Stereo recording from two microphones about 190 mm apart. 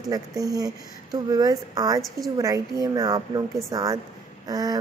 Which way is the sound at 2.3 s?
20° right (ahead or behind).